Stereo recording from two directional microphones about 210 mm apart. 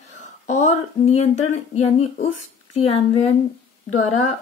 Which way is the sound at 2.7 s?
30° left (ahead or behind).